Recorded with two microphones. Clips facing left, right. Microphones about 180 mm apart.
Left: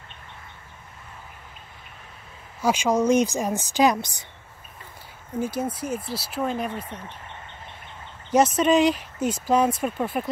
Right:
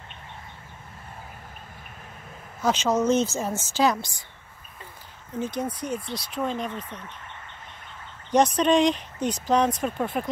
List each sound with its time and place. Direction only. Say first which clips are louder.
2.6 s speech: left 1 dB; 10° left (ahead or behind)
5.4 s speech: left 2 dB; 10° left (ahead or behind)
8.5 s speech: left 1 dB; 5° left (ahead or behind)